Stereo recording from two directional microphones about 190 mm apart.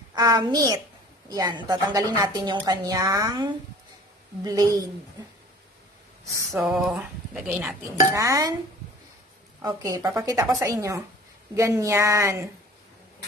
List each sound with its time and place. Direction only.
0.1 s a woman's voice: 20° right (ahead or behind)
6.5 s speech: centre (ahead or behind)
8.1 s a woman's voice: 15° right (ahead or behind)
9.7 s a woman's voice: 20° right (ahead or behind)